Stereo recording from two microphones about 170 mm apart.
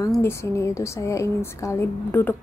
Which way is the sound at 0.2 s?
15° left (ahead or behind).